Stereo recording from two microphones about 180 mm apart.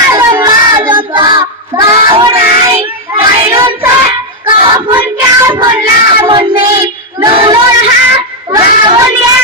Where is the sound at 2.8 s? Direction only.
15° right (ahead or behind).